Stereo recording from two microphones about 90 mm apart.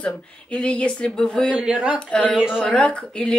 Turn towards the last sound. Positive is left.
turn(degrees=10)  # may be behind; listen again after turning